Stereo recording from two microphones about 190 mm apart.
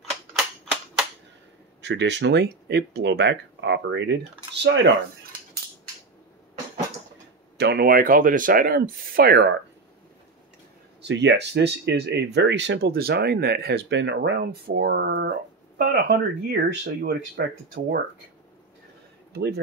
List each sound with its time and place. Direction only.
1.8 s speech: 65° right (ahead or behind)
7.5 s speech: 60° right (ahead or behind)
11.0 s speech: 65° right (ahead or behind)
19.3 s speech: 60° right (ahead or behind)